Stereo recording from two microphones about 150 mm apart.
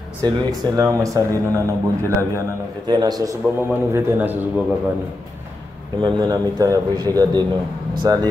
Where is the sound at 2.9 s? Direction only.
25° right (ahead or behind).